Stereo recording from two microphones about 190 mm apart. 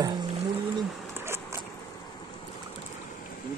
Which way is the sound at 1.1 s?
15° right (ahead or behind).